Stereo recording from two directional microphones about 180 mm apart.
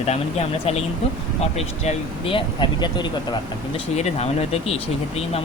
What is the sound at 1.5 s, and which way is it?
Speech, 35° left (ahead or behind).